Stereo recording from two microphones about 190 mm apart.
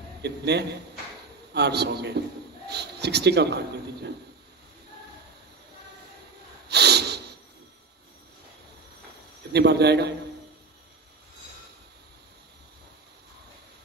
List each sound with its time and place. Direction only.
0.2 s a man's voice: 60° right (ahead or behind)
6.7 s snort: 60° right (ahead or behind)
9.5 s a man's voice: 60° right (ahead or behind)